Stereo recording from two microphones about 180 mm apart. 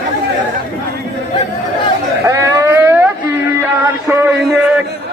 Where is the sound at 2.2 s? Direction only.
15° right (ahead or behind).